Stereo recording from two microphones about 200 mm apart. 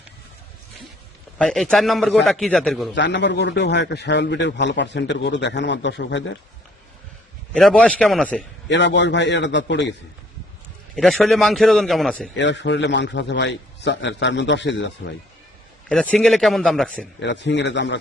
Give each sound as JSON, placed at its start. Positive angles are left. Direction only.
{"t": 1.4, "sound": "a man's voice", "side_deg": 5}
{"t": 2.9, "sound": "a man's voice", "side_deg": 60}
{"t": 7.5, "sound": "a man's voice", "side_deg": 5}
{"t": 8.7, "sound": "a man's voice", "side_deg": 60}
{"t": 10.9, "sound": "a man's voice", "side_deg": 5}
{"t": 12.3, "sound": "a man's voice", "side_deg": 60}
{"t": 15.9, "sound": "a man's voice", "side_deg": 0}
{"t": 17.2, "sound": "a man's voice", "side_deg": 60}